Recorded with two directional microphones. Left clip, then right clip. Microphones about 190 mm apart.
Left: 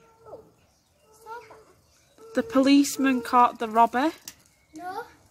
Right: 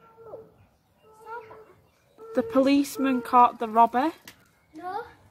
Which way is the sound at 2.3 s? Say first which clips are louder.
Left 1 dB; 5° left (ahead or behind).